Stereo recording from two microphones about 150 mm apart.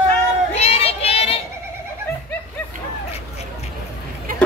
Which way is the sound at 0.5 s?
45° left (ahead or behind).